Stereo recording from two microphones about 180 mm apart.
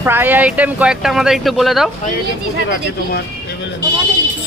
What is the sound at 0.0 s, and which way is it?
Speech, 10° right (ahead or behind).